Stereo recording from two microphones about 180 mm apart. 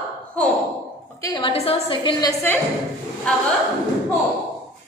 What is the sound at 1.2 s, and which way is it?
A woman's voice, 25° left (ahead or behind).